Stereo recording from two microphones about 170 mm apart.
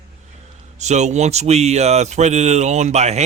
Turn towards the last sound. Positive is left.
turn(degrees=-40)  # may be behind; listen again after turning